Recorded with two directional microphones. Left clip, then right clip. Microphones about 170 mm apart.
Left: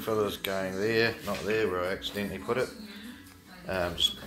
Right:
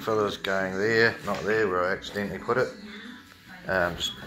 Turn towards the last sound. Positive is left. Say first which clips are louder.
# right 2 dB
turn(degrees=10)  # may be behind; listen again after turning